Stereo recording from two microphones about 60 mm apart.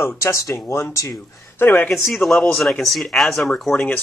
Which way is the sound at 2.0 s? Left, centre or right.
Centre.